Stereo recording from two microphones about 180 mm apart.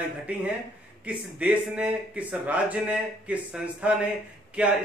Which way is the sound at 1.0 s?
5° right (ahead or behind).